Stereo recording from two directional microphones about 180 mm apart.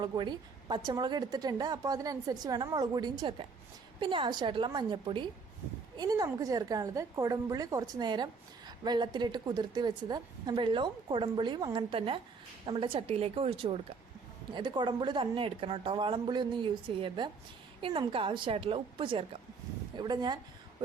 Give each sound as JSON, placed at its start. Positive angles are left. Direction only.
{"t": 0.0, "sound": "a woman's voice", "side_deg": -25}